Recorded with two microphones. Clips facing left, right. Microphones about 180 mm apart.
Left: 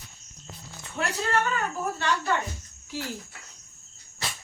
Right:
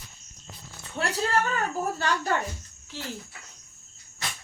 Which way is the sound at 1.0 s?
30° right (ahead or behind).